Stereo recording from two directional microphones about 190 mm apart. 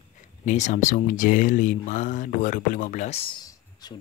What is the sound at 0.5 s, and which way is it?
Speech, 40° left (ahead or behind).